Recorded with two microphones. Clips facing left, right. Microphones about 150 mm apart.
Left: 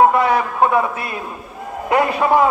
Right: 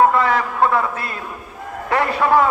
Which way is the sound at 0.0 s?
20° left (ahead or behind).